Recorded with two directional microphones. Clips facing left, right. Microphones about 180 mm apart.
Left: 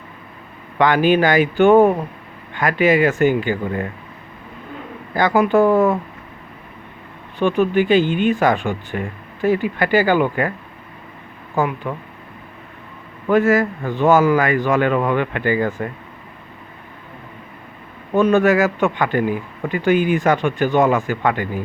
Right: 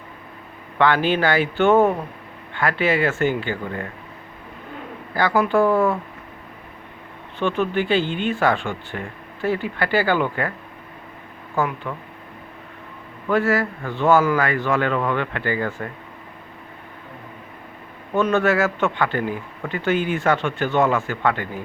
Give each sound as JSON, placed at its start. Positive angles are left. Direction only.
{"t": 0.8, "sound": "speech", "side_deg": 15}
{"t": 5.1, "sound": "speech", "side_deg": 20}
{"t": 7.3, "sound": "speech", "side_deg": 15}
{"t": 11.5, "sound": "speech", "side_deg": 15}
{"t": 13.2, "sound": "speech", "side_deg": 20}
{"t": 18.3, "sound": "speech", "side_deg": 15}